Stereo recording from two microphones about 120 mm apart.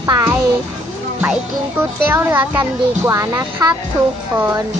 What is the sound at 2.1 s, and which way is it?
Speech, 20° right (ahead or behind).